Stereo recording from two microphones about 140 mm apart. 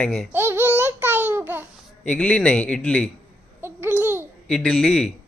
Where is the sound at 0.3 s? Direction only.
15° right (ahead or behind).